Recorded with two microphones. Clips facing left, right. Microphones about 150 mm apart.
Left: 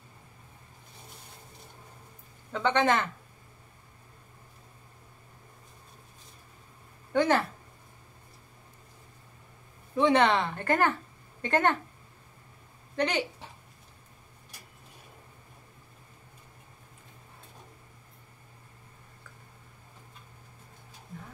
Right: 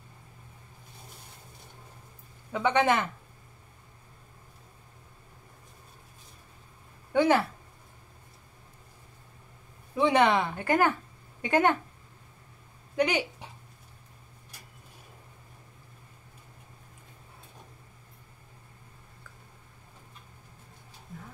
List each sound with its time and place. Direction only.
2.5 s speech: 10° right (ahead or behind)
7.1 s speech: 10° right (ahead or behind)
9.9 s speech: 10° right (ahead or behind)
12.9 s speech: 10° right (ahead or behind)